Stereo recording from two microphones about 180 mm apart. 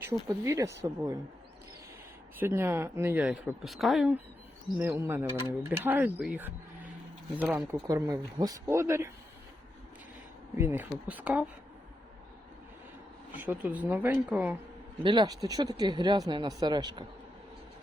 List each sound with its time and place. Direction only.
0.0 s a woman's voice: 15° right (ahead or behind)
2.4 s a woman's voice: 15° right (ahead or behind)
7.7 s a woman's voice: 20° right (ahead or behind)
10.6 s a woman's voice: 10° right (ahead or behind)
13.3 s a woman's voice: 10° right (ahead or behind)
15.0 s speech: 25° right (ahead or behind)